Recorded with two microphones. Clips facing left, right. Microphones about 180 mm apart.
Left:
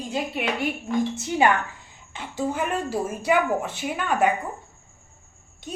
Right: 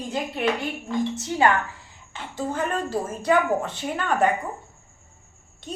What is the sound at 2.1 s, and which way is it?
A woman's voice, 15° left (ahead or behind).